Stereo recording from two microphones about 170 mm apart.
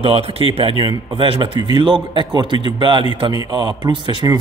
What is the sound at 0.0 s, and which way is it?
Speech, 35° right (ahead or behind).